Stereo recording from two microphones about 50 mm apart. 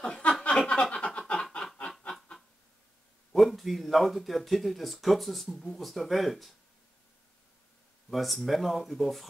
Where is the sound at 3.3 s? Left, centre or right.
Centre.